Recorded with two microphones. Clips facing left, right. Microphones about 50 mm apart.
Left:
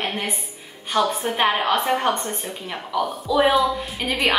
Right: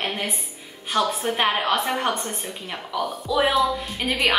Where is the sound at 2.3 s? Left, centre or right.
Centre.